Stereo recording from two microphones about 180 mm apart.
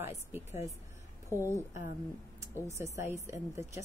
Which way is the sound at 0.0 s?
15° right (ahead or behind).